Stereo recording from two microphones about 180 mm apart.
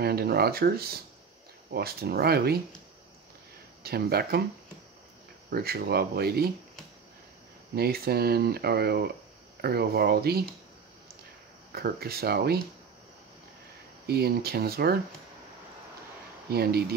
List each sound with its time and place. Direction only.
0.0 s speech: 60° right (ahead or behind)
3.8 s speech: 60° right (ahead or behind)
5.5 s speech: 60° right (ahead or behind)
7.7 s speech: 60° right (ahead or behind)
11.7 s speech: 60° right (ahead or behind)
14.0 s speech: 60° right (ahead or behind)
16.4 s speech: 60° right (ahead or behind)